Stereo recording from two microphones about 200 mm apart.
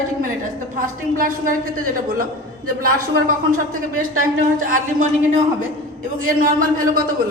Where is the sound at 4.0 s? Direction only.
45° right (ahead or behind).